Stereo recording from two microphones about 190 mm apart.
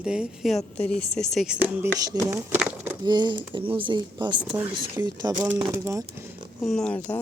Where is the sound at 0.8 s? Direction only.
30° left (ahead or behind).